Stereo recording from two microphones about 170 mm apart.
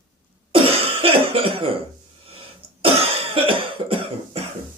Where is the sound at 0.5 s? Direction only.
35° right (ahead or behind).